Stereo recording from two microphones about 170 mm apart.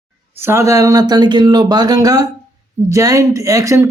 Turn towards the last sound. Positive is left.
turn(degrees=-20)  # may be behind; listen again after turning